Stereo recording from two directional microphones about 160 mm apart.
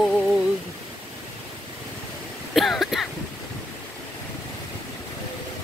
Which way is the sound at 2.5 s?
Centre (ahead or behind).